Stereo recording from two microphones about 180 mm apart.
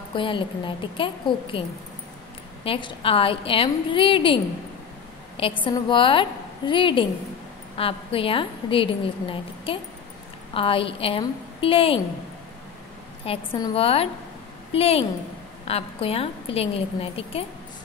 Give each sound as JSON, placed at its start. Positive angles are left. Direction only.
{"t": 0.1, "sound": "a woman's voice", "side_deg": 30}
{"t": 2.6, "sound": "a woman's voice", "side_deg": 30}
{"t": 5.4, "sound": "a woman's voice", "side_deg": 25}
{"t": 13.2, "sound": "a woman's voice", "side_deg": 30}